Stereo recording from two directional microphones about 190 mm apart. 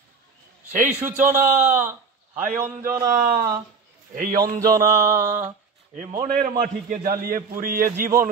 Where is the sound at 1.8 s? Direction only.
10° right (ahead or behind).